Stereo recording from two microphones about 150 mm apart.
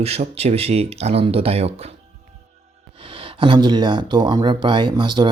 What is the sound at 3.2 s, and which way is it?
Speech, 35° right (ahead or behind).